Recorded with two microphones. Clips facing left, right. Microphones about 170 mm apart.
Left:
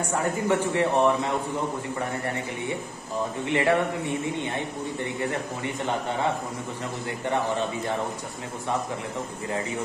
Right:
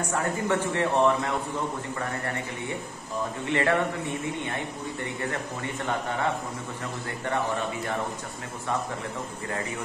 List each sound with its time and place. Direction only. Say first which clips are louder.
0.1 s a man's voice: left 3 dB; 15° left (ahead or behind)
3.4 s a man's voice: left 2 dB; 15° left (ahead or behind)